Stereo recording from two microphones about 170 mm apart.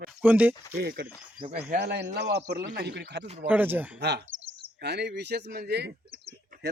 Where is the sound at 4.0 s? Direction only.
80° right.